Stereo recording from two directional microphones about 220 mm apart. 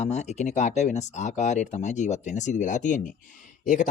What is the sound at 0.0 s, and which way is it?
Speech, 30° left (ahead or behind).